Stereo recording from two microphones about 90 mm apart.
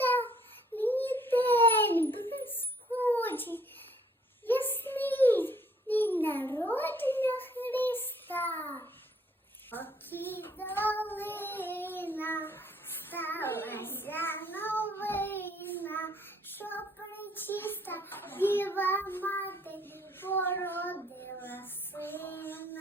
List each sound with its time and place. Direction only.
0.0 s child singing: 20° left (ahead or behind)
0.8 s a sound: 20° left (ahead or behind)
6.5 s child singing: 25° left (ahead or behind)